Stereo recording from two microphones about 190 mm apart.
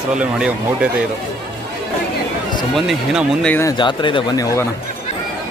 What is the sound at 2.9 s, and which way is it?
Speech, centre (ahead or behind).